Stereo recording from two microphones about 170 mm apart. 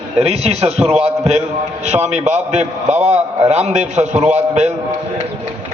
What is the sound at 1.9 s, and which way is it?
A man's voice, 40° right (ahead or behind).